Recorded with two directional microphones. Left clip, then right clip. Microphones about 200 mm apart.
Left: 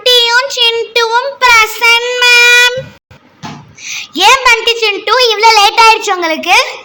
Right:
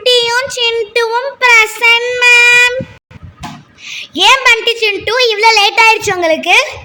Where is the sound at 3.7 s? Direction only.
15° right (ahead or behind).